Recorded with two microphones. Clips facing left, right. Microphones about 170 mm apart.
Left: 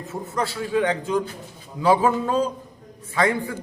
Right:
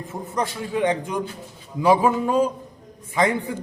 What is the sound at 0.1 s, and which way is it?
A man's voice, 20° right (ahead or behind).